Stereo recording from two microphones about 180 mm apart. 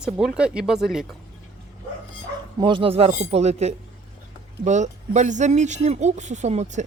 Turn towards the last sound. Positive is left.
turn(degrees=-40)  # may be behind; listen again after turning